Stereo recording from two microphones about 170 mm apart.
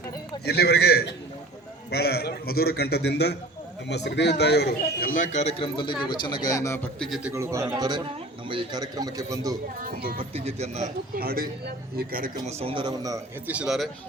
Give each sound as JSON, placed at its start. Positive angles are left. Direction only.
{"t": 0.4, "sound": "a man's voice", "side_deg": 70}
{"t": 7.1, "sound": "a man's voice", "side_deg": -5}
{"t": 10.3, "sound": "speech", "side_deg": -40}
{"t": 11.2, "sound": "a man's voice", "side_deg": -65}
{"t": 12.5, "sound": "a man's voice", "side_deg": -35}
{"t": 13.5, "sound": "speech", "side_deg": -5}